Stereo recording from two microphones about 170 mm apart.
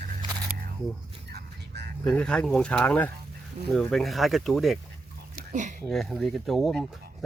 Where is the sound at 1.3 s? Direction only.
75° right (ahead or behind).